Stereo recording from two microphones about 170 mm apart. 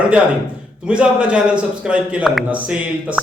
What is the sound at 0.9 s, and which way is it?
A man's voice, 5° right (ahead or behind).